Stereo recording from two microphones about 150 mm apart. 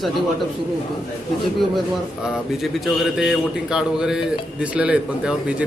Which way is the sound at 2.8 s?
5° right (ahead or behind).